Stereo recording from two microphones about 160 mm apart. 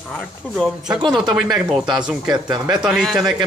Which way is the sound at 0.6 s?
Centre (ahead or behind).